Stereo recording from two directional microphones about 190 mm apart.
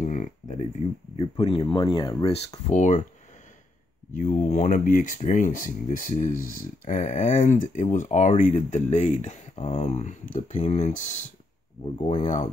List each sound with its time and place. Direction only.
0.0 s a sound: 40° left (ahead or behind)
1.2 s speech: 25° left (ahead or behind)
4.2 s speech: 45° left (ahead or behind)